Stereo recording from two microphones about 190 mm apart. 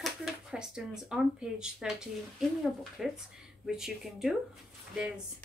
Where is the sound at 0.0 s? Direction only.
5° right (ahead or behind).